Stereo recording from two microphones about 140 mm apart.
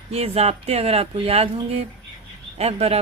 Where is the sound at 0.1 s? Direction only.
45° right (ahead or behind).